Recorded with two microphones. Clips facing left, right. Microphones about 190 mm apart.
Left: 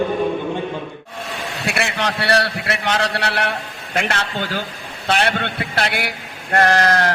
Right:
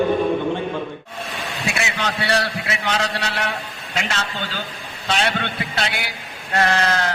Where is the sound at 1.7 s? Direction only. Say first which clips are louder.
Left 3 dB; 60° left (ahead or behind).